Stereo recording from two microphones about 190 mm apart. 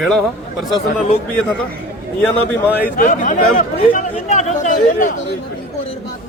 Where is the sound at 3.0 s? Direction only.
40° left (ahead or behind).